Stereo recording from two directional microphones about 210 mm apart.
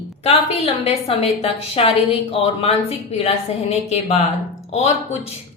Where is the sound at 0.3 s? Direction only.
25° left (ahead or behind).